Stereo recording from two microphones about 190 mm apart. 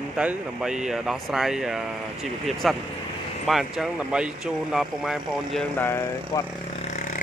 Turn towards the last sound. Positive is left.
turn(degrees=40)  # may be behind; listen again after turning